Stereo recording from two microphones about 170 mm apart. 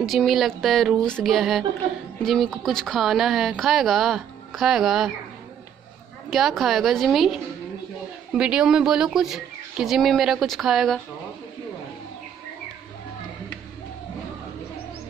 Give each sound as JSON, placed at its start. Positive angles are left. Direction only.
{"t": 0.0, "sound": "speech", "side_deg": 0}
{"t": 6.3, "sound": "speech", "side_deg": 0}